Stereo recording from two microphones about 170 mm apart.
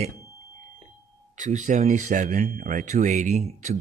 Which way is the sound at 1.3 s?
45° right (ahead or behind).